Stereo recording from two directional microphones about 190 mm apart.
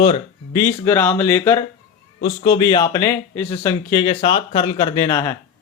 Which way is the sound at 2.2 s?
25° left (ahead or behind).